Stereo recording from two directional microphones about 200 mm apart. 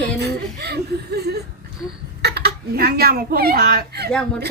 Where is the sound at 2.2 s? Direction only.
55° right (ahead or behind).